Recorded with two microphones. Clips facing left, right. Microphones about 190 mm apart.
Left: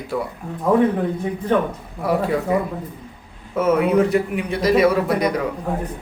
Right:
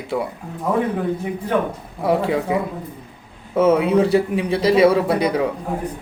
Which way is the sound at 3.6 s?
30° right (ahead or behind).